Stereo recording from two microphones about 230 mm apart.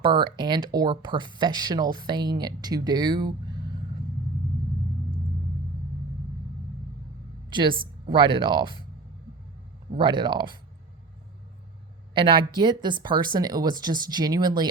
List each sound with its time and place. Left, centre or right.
0.0 s speech: centre
7.5 s speech: right
9.9 s speech: centre
12.1 s speech: right